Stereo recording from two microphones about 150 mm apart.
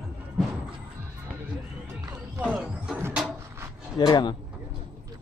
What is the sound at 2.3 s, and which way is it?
Music, 10° right (ahead or behind).